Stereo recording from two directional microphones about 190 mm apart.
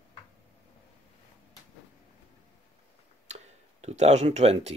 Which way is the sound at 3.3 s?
35° right (ahead or behind).